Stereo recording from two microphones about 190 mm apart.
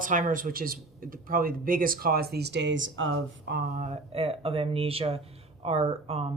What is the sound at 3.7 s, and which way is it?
Speech, 35° right (ahead or behind).